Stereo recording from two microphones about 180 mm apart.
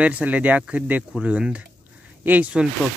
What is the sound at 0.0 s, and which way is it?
Speech, 10° right (ahead or behind).